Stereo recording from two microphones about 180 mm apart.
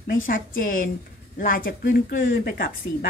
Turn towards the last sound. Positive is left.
turn(degrees=55)  # may be behind; listen again after turning